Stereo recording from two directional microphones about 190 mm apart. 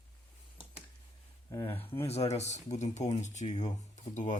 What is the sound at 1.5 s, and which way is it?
Speech, 15° left (ahead or behind).